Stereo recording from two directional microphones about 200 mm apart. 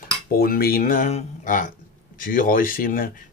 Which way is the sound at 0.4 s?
50° left (ahead or behind).